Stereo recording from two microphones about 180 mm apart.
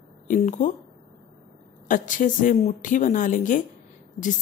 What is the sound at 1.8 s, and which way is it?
Speech, 45° left (ahead or behind).